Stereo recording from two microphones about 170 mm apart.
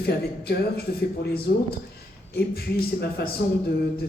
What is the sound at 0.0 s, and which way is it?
Speech, 65° left (ahead or behind).